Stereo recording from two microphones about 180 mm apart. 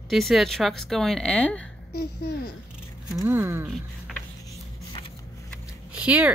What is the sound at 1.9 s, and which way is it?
Speech, 60° left (ahead or behind).